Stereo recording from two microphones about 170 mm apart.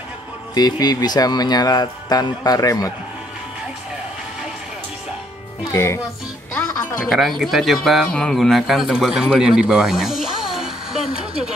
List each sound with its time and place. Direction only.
0.6 s speech: 25° left (ahead or behind)
5.7 s speech: 15° left (ahead or behind)
6.5 s music: 10° left (ahead or behind)
7.1 s speech: centre (ahead or behind)